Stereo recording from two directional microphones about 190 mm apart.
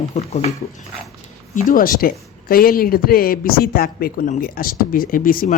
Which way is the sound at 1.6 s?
50° left (ahead or behind).